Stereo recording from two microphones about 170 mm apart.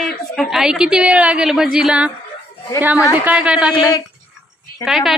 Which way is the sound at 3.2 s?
5° right (ahead or behind).